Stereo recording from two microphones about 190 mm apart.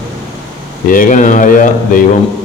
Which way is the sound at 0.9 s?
45° left (ahead or behind).